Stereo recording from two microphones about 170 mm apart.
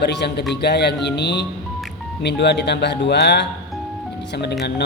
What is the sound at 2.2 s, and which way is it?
Speech, 90° left.